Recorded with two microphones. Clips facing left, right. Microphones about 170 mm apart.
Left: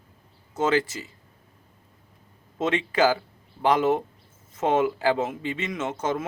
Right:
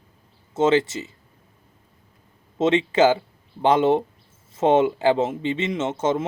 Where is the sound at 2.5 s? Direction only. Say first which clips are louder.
Right 5 dB; 25° right (ahead or behind).